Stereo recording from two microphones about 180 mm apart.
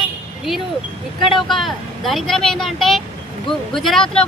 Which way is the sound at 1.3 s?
Centre (ahead or behind).